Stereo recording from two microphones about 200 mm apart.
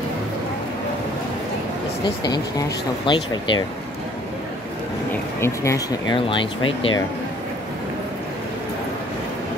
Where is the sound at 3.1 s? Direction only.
25° left (ahead or behind).